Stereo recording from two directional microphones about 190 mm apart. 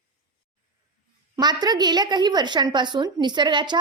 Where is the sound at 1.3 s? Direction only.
20° right (ahead or behind).